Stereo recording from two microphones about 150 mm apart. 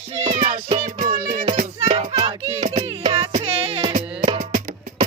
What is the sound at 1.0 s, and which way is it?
Music, 70° right (ahead or behind).